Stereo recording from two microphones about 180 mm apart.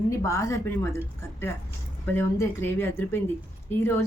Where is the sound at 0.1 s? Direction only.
15° left (ahead or behind).